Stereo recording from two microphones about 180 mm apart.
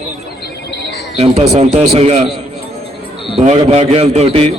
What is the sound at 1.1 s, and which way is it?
Speech, 35° right (ahead or behind).